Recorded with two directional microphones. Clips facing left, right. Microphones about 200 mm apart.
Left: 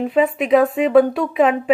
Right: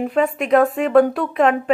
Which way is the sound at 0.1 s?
Centre (ahead or behind).